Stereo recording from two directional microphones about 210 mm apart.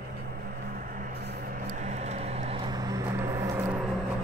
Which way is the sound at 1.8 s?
30° right (ahead or behind).